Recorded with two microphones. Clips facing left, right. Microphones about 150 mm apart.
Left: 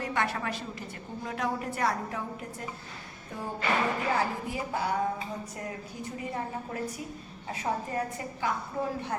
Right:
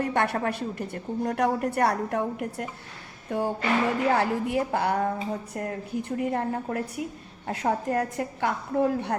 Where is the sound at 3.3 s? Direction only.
80° right.